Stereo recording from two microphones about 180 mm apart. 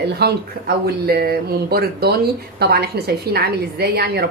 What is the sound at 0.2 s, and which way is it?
A woman's voice, 65° right (ahead or behind).